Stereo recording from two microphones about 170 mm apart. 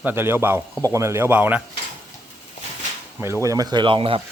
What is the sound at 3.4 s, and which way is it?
Speech, 20° right (ahead or behind).